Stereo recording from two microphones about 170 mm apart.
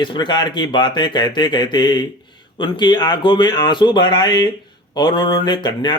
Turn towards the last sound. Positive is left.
turn(degrees=25)  # may be behind; listen again after turning